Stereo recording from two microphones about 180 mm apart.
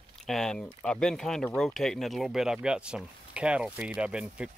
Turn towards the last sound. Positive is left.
turn(degrees=-5)  # may be behind; listen again after turning